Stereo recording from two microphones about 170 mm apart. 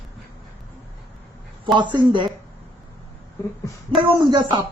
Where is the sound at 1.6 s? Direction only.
25° right (ahead or behind).